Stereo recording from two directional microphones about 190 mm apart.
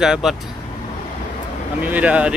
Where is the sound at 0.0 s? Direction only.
Centre (ahead or behind).